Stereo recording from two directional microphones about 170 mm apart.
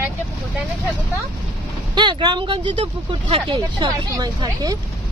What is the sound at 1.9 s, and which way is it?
Speech, 25° right (ahead or behind).